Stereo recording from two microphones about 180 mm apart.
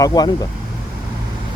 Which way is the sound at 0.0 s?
20° left (ahead or behind).